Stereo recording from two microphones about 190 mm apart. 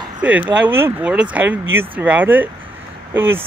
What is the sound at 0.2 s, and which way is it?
Speech, 5° right (ahead or behind).